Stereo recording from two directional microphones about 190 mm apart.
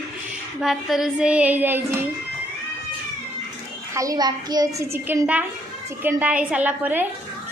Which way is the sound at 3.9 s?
20° right (ahead or behind).